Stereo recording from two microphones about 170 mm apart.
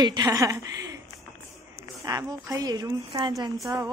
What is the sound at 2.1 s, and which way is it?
A woman's voice, 20° right (ahead or behind).